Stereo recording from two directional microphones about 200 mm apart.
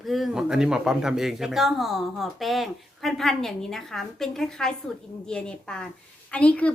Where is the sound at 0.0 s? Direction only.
Centre (ahead or behind).